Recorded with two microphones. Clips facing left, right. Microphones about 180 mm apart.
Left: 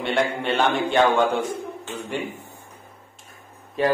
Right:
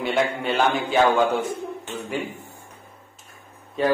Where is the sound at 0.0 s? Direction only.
Centre (ahead or behind).